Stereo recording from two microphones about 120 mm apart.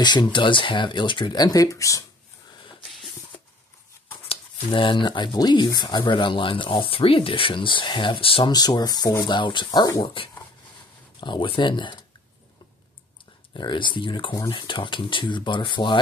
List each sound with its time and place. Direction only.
0.0 s speech: 35° left (ahead or behind)
2.8 s a sound: centre (ahead or behind)
4.3 s speech: 45° left (ahead or behind)
8.5 s speech: 35° left (ahead or behind)
10.0 s speech: 45° left (ahead or behind)
13.5 s speech: 40° left (ahead or behind)